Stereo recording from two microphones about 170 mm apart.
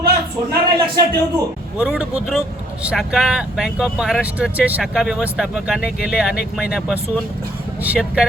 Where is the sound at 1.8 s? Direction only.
5° right (ahead or behind).